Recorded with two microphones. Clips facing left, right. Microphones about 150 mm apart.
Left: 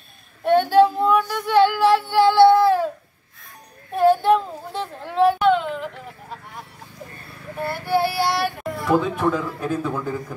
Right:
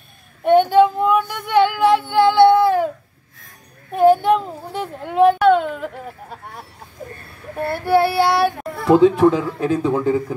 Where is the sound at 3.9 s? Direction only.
20° right (ahead or behind).